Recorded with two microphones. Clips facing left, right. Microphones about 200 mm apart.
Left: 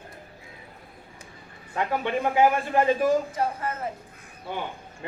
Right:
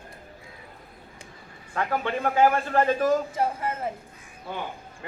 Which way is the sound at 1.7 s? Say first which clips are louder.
Left 1 dB; 20° left (ahead or behind).